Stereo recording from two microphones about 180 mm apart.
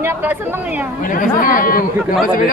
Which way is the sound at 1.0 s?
50° left (ahead or behind).